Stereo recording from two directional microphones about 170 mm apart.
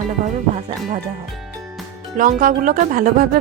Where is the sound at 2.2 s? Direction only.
55° right (ahead or behind).